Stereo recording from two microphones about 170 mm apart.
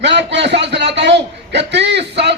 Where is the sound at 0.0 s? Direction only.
90° right.